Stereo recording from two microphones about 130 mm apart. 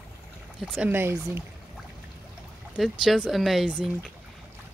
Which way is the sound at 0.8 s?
15° right (ahead or behind).